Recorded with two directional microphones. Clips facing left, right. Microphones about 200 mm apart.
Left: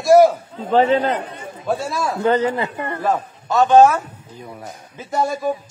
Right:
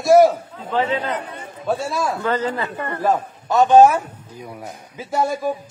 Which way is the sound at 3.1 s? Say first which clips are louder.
Right 2 dB; 15° right (ahead or behind).